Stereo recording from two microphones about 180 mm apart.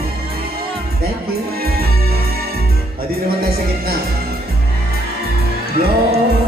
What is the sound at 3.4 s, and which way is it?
Music, 55° right (ahead or behind).